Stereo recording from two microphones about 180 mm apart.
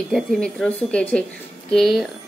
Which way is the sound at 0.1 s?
Centre (ahead or behind).